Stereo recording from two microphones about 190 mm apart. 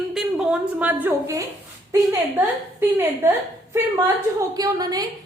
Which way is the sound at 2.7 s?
10° right (ahead or behind).